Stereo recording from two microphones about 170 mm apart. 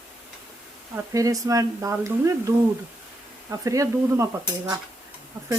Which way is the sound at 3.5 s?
20° right (ahead or behind).